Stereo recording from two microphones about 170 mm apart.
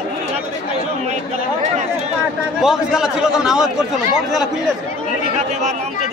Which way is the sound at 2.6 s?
5° right (ahead or behind).